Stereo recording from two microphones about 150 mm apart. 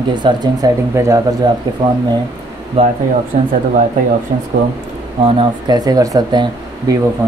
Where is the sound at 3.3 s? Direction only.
65° right (ahead or behind).